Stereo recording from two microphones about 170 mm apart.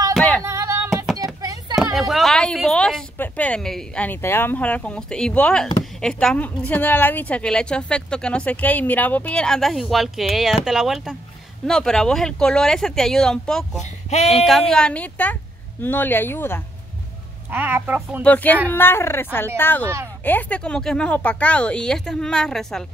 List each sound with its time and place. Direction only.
0.4 s music: 15° right (ahead or behind)
1.1 s a sound: 20° right (ahead or behind)
2.0 s a woman's voice: centre (ahead or behind)
17.5 s a woman's voice: 10° right (ahead or behind)
18.2 s a woman's voice: 10° left (ahead or behind)